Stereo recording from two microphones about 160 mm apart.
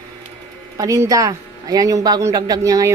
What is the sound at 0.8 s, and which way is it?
A man's voice, 20° right (ahead or behind).